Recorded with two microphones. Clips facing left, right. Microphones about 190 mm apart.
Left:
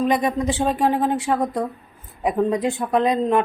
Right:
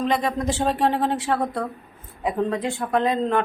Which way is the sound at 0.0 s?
20° left (ahead or behind).